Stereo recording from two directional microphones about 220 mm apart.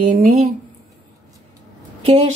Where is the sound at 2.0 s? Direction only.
30° right (ahead or behind).